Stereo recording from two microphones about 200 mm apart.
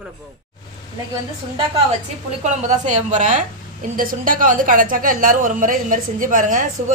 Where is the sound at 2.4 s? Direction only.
35° right (ahead or behind).